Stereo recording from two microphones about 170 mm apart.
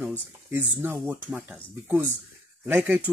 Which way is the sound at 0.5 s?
15° right (ahead or behind).